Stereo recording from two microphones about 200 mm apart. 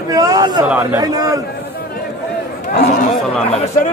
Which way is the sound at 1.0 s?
20° right (ahead or behind).